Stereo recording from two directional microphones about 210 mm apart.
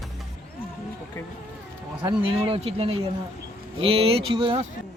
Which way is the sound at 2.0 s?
25° right (ahead or behind).